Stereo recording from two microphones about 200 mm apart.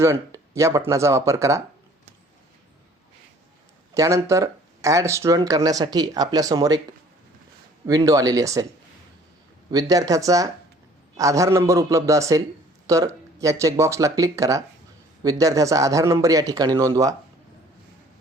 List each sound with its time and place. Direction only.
0.0 s speech: 15° right (ahead or behind)
3.9 s speech: 15° right (ahead or behind)
7.9 s speech: 20° right (ahead or behind)
9.6 s speech: 20° right (ahead or behind)